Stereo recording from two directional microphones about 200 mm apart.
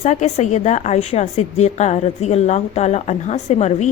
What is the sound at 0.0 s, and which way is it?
A woman's voice, 35° left (ahead or behind).